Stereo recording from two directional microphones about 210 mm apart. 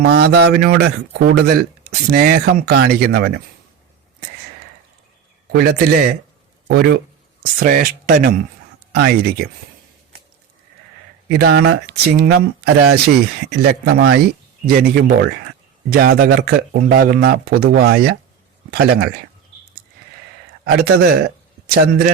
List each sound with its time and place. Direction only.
0.0 s speech: 50° right (ahead or behind)
5.5 s speech: 50° right (ahead or behind)
7.6 s speech: 40° right (ahead or behind)
11.3 s speech: 50° right (ahead or behind)
20.7 s a man's voice: 50° right (ahead or behind)